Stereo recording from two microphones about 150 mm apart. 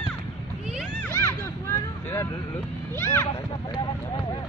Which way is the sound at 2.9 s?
15° left (ahead or behind).